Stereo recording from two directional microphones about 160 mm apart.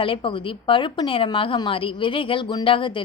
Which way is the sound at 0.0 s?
35° left (ahead or behind).